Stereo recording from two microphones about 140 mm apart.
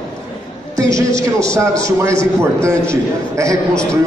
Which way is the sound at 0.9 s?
25° right (ahead or behind).